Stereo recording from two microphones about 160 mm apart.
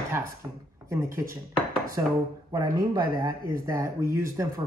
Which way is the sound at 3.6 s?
20° right (ahead or behind).